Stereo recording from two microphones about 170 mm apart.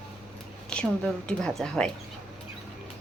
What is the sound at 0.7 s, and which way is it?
A woman's voice, 5° left (ahead or behind).